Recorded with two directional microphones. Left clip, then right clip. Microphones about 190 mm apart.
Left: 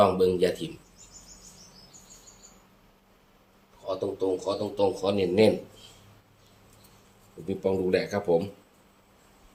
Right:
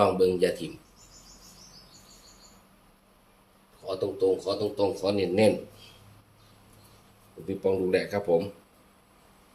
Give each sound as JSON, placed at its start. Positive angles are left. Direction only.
{"t": 0.0, "sound": "speech", "side_deg": 20}
{"t": 3.8, "sound": "speech", "side_deg": 0}
{"t": 7.4, "sound": "speech", "side_deg": 20}